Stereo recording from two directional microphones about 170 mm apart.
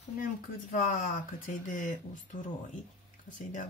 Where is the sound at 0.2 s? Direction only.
50° left (ahead or behind).